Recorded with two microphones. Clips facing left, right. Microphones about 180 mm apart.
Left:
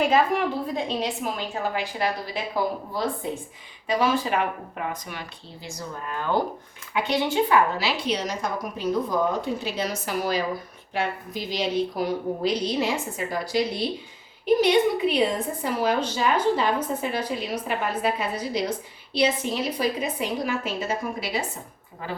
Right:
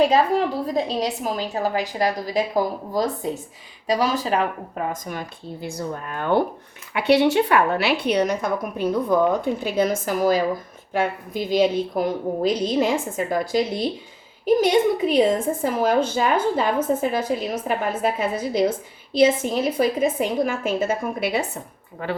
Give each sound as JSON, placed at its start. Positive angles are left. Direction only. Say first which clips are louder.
{"t": 0.0, "sound": "a woman's voice", "louder": "right 3 dB", "side_deg": -35}
{"t": 5.6, "sound": "a woman's voice", "louder": "right 5 dB", "side_deg": -60}
{"t": 6.9, "sound": "a woman's voice", "louder": "right 7 dB", "side_deg": -70}